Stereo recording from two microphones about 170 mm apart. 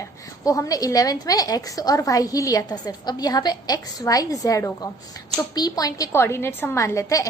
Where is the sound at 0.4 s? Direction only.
20° left (ahead or behind).